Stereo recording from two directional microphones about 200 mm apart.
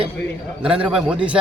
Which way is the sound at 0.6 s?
5° right (ahead or behind).